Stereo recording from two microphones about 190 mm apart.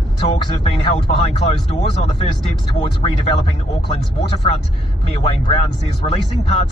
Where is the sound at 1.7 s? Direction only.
35° left (ahead or behind).